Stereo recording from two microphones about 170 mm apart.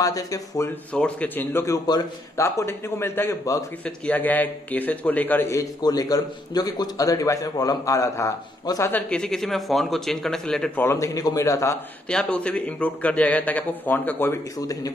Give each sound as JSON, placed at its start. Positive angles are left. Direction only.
{"t": 0.0, "sound": "a man's voice", "side_deg": 20}
{"t": 0.9, "sound": "a man's voice", "side_deg": 10}
{"t": 9.1, "sound": "speech", "side_deg": 5}
{"t": 12.1, "sound": "a man's voice", "side_deg": 5}